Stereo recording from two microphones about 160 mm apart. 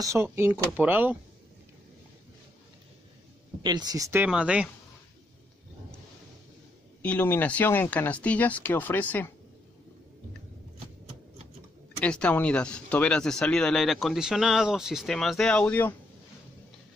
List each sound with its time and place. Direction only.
0.0 s speech: 15° right (ahead or behind)
3.6 s speech: 25° right (ahead or behind)
4.3 s speech: 5° right (ahead or behind)
7.0 s speech: 10° left (ahead or behind)
12.0 s speech: 5° left (ahead or behind)